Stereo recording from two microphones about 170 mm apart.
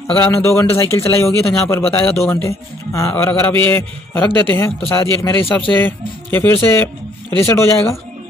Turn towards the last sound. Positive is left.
turn(degrees=15)  # may be behind; listen again after turning